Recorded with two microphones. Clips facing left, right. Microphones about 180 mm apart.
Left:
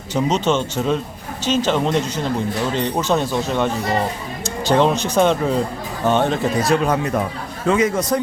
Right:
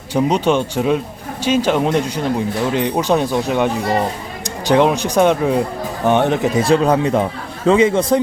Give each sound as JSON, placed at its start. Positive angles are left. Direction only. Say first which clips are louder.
{"t": 0.1, "sound": "speech", "louder": "right 3 dB", "side_deg": -10}
{"t": 6.6, "sound": "speech", "louder": "right 5 dB", "side_deg": -30}